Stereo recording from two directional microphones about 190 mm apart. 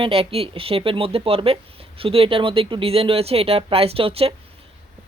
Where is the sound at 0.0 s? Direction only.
30° right (ahead or behind).